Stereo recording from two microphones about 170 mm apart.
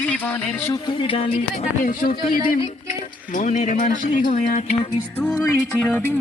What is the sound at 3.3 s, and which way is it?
Speech, 50° left (ahead or behind).